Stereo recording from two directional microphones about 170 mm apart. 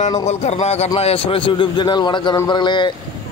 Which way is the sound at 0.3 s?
40° left (ahead or behind).